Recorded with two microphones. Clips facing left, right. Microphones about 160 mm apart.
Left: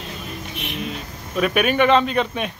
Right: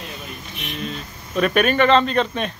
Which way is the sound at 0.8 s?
5° left (ahead or behind).